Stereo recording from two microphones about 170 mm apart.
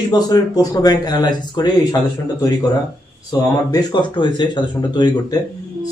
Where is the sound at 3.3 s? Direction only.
25° left (ahead or behind).